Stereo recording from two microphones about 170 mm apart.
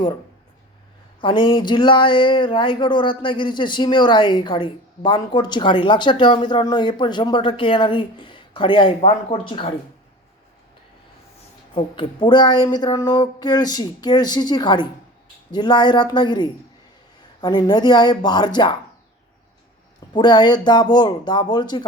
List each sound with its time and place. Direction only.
1.2 s speech: 30° left (ahead or behind)
11.9 s speech: 30° left (ahead or behind)
20.1 s speech: 25° left (ahead or behind)